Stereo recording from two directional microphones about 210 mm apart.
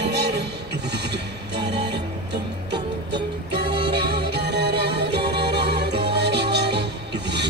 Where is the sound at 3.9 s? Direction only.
50° right (ahead or behind).